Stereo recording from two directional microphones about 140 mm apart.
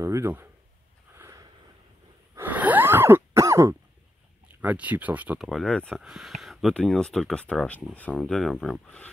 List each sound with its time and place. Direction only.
0.0 s speech: 20° right (ahead or behind)
1.1 s a sound: 20° right (ahead or behind)
4.6 s speech: 10° right (ahead or behind)
5.5 s speech: 5° left (ahead or behind)